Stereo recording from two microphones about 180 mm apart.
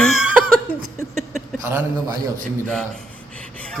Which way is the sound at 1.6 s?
20° right (ahead or behind).